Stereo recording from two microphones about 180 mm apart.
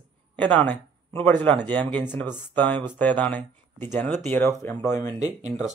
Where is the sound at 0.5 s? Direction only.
10° left (ahead or behind).